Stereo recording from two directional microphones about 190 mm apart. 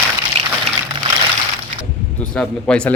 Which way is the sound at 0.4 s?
35° right (ahead or behind).